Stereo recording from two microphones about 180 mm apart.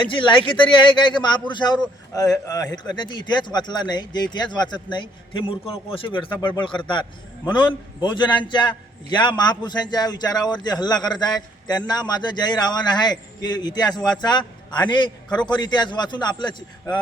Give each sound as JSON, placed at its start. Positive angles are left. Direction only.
{"t": 0.0, "sound": "a man's voice", "side_deg": 25}